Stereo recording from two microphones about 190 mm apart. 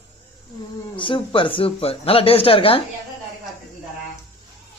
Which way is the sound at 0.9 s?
25° left (ahead or behind).